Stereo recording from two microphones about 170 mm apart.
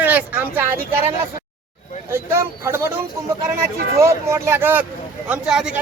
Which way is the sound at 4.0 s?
15° right (ahead or behind).